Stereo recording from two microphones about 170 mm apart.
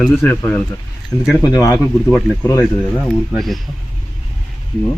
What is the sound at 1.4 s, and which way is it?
Speech, 20° left (ahead or behind).